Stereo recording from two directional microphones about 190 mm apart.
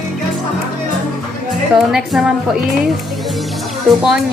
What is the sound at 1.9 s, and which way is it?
Speech, centre (ahead or behind).